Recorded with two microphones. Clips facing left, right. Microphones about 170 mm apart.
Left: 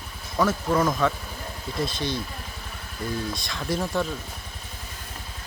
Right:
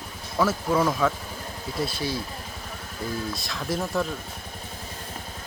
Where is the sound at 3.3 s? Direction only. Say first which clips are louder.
Left 1 dB; centre (ahead or behind).